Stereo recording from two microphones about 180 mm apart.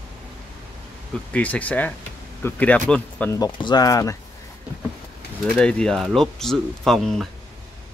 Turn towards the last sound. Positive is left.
turn(degrees=0)  # may be behind; listen again after turning